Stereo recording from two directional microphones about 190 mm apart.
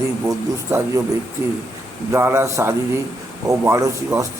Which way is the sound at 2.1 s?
15° right (ahead or behind).